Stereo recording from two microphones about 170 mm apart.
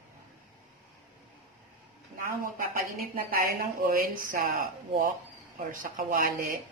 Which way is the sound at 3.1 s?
55° right (ahead or behind).